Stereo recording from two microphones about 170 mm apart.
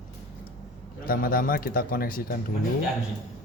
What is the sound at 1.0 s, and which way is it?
Speech, 60° left (ahead or behind).